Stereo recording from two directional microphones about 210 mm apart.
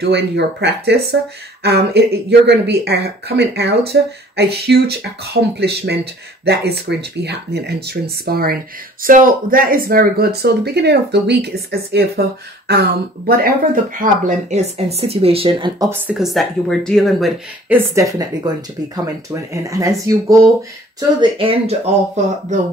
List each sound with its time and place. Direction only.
0.0 s speech: 55° right (ahead or behind)
13.9 s speech: 40° right (ahead or behind)
15.9 s speech: 10° right (ahead or behind)
17.6 s speech: 15° right (ahead or behind); by 22.6 s 30° right (ahead or behind)